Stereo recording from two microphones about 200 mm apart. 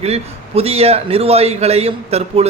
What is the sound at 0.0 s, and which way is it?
A man's voice, 30° right (ahead or behind).